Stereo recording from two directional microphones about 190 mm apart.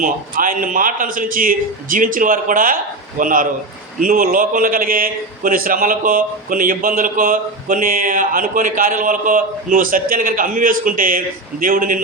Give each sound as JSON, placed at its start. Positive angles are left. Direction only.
{"t": 0.0, "sound": "a man's voice", "side_deg": -45}